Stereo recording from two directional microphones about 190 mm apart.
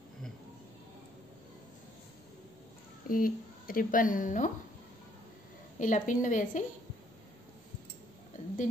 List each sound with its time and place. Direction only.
3.1 s speech: 45° left (ahead or behind)
5.8 s a woman's voice: 40° left (ahead or behind)